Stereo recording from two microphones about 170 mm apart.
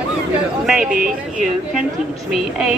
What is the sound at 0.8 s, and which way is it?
Speech, 55° right (ahead or behind).